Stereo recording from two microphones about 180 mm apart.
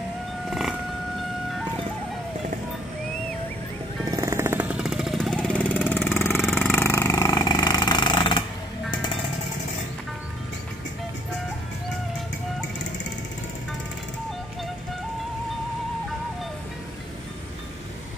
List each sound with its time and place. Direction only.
0.5 s wild animals: centre (ahead or behind)
4.0 s jackhammer: 20° right (ahead or behind); by 5.8 s 5° left (ahead or behind)
5.9 s vehicle: 10° left (ahead or behind)